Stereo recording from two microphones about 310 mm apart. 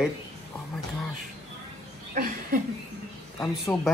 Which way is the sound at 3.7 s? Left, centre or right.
Centre.